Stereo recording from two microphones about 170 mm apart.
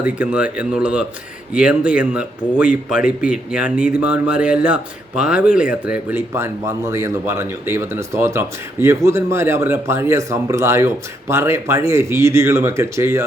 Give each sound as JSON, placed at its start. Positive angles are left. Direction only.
{"t": 0.0, "sound": "speech", "side_deg": -5}